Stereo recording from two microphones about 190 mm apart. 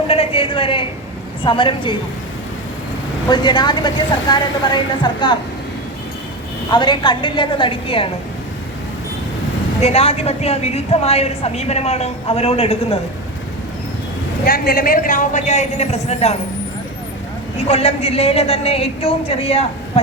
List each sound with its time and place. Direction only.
0.1 s a sound: 30° left (ahead or behind)
1.5 s a woman's voice: 25° left (ahead or behind)
3.2 s a woman's voice: 25° left (ahead or behind)
6.7 s a woman's voice: 25° left (ahead or behind)
9.8 s a woman's voice: 30° left (ahead or behind)
14.4 s a man's voice: 50° left (ahead or behind); by 16.4 s 35° left (ahead or behind)
17.7 s a woman's voice: 30° left (ahead or behind)